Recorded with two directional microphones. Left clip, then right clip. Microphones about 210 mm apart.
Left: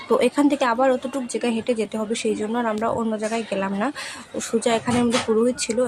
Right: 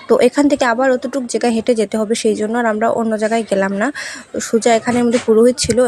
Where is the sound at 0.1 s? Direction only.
25° right (ahead or behind).